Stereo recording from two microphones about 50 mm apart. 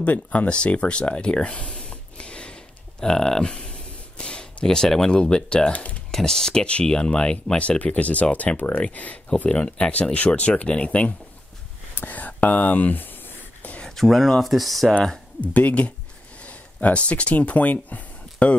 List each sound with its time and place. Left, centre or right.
0.0 s a sound: left; by 5.1 s centre
5.1 s speech: left
6.1 s speech: centre
11.9 s a sound: left
13.8 s speech: centre
15.4 s speech: left